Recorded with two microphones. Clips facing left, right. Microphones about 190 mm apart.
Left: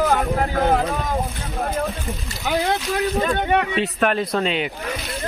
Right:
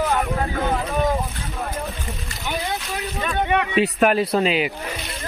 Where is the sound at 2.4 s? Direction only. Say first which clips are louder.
Left 5 dB; 90° left.